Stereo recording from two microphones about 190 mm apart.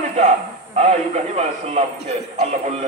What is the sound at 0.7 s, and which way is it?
A man's voice, 35° right (ahead or behind).